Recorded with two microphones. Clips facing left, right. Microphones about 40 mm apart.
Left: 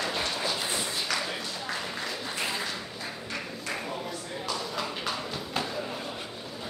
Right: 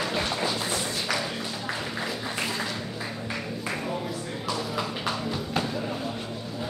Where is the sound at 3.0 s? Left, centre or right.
Centre.